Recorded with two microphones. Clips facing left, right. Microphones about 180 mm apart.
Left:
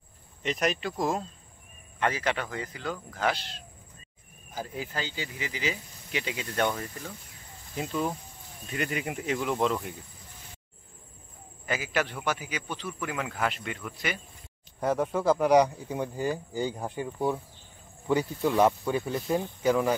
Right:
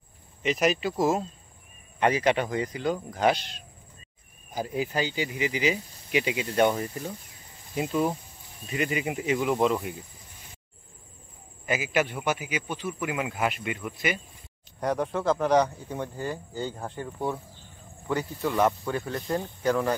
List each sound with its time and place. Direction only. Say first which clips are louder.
0.4 s speech: right 4 dB; 5° right (ahead or behind)
2.0 s speech: right 5 dB; 15° right (ahead or behind)
11.6 s speech: right 3 dB; 10° right (ahead or behind)
14.8 s speech: even; 5° left (ahead or behind)